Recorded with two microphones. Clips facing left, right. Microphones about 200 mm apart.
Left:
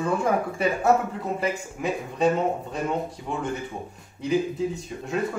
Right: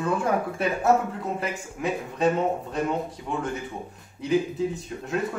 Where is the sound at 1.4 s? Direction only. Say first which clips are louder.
Left 2 dB; centre (ahead or behind).